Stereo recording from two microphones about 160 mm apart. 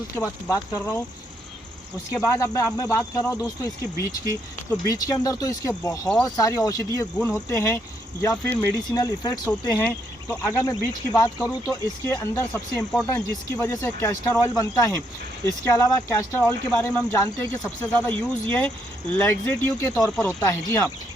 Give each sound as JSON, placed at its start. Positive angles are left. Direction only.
{"t": 0.4, "sound": "speech", "side_deg": 15}
{"t": 2.1, "sound": "speech", "side_deg": 20}
{"t": 9.5, "sound": "speech", "side_deg": 10}